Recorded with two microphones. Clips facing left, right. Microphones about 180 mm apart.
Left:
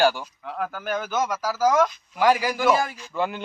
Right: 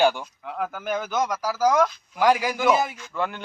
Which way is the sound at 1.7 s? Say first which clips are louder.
Even; centre (ahead or behind).